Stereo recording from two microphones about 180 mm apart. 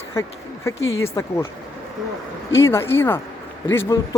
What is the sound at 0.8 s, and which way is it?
Speech, 90° left.